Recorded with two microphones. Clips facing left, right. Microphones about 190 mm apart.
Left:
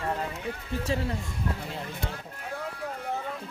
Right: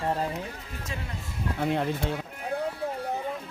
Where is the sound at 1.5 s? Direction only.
65° right (ahead or behind).